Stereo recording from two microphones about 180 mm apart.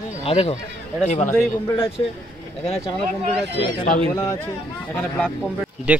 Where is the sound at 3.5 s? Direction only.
45° left (ahead or behind).